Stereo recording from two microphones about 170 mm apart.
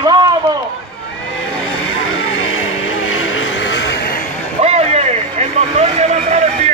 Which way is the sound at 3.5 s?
90° left.